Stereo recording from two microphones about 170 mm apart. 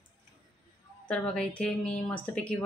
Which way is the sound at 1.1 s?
5° left (ahead or behind).